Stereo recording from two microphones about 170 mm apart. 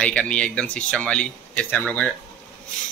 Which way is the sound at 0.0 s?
5° left (ahead or behind).